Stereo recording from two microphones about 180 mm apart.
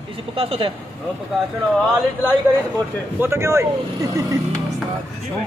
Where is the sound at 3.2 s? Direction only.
15° right (ahead or behind).